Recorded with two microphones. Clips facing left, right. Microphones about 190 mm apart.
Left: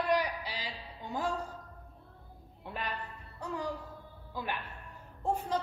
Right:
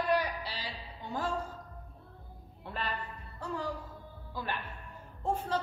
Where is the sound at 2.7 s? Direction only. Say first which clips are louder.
Right 1 dB; 15° left (ahead or behind).